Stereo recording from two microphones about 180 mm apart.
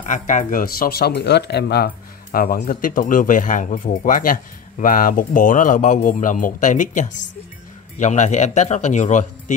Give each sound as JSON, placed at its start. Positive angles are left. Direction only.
{"t": 0.0, "sound": "speech", "side_deg": 45}
{"t": 2.3, "sound": "a man's voice", "side_deg": 55}